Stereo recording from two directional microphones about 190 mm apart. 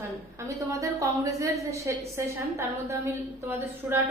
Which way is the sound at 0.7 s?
15° right (ahead or behind).